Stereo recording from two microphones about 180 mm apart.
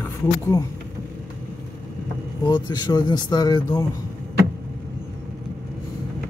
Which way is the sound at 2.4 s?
25° left (ahead or behind).